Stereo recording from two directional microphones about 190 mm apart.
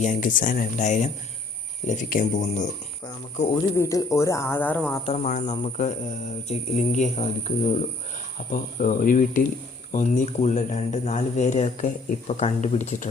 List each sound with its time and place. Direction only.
0.0 s speech: 40° left (ahead or behind)
3.8 s speech: 15° left (ahead or behind)
5.0 s speech: 35° left (ahead or behind)